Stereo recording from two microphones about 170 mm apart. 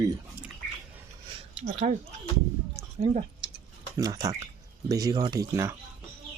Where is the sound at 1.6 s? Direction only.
40° right (ahead or behind).